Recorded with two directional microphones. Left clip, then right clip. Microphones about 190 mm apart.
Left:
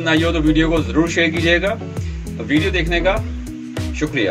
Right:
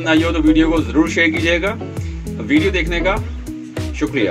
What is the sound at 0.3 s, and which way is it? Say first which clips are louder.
A man's voice: right 2 dB; 15° right (ahead or behind).